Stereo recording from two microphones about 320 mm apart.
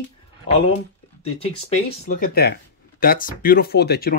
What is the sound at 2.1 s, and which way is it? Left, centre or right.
Speech, left.